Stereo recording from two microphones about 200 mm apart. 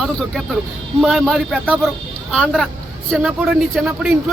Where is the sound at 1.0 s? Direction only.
Centre (ahead or behind).